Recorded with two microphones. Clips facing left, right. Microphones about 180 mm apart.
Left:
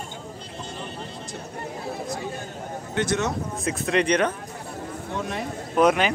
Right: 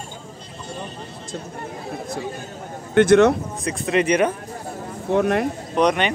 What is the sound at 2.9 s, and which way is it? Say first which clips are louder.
Speech: right 12 dB; 60° right (ahead or behind).